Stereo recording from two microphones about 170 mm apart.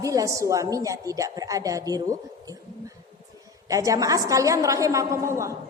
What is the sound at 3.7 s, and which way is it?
A woman's voice, 20° right (ahead or behind).